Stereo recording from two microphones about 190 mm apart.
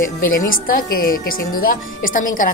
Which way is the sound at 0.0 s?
45° left (ahead or behind).